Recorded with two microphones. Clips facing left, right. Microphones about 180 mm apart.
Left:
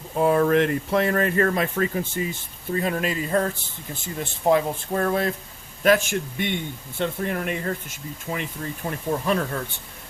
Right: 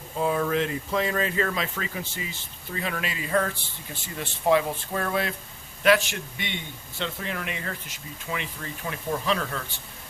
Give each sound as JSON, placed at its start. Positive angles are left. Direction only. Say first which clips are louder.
{"t": 0.2, "sound": "speech", "louder": "left 6 dB", "side_deg": 55}